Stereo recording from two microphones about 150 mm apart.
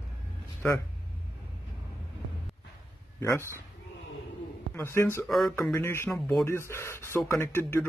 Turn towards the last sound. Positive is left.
turn(degrees=15)  # may be behind; listen again after turning